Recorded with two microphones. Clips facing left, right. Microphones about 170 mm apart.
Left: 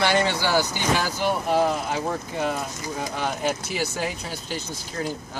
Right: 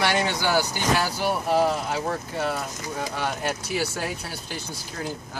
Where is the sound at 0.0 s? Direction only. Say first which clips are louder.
Left 2 dB; 10° right (ahead or behind).